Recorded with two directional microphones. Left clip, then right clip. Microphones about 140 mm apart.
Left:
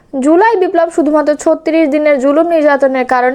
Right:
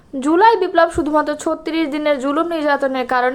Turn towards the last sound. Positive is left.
turn(degrees=40)  # may be behind; listen again after turning